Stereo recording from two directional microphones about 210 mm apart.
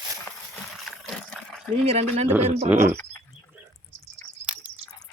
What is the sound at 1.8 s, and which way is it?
Speech, 30° right (ahead or behind).